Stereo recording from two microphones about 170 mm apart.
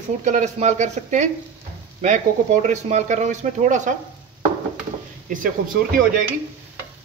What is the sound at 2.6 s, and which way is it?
A man's voice, 45° right (ahead or behind).